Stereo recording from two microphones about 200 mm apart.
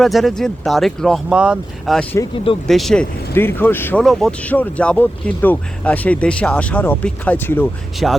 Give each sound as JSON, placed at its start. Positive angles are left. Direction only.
{"t": 0.0, "sound": "speech", "side_deg": 0}
{"t": 2.3, "sound": "speech", "side_deg": 25}
{"t": 2.6, "sound": "speech", "side_deg": 0}